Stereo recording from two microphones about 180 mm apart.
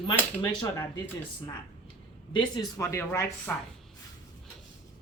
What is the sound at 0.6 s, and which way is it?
Speech, 20° left (ahead or behind).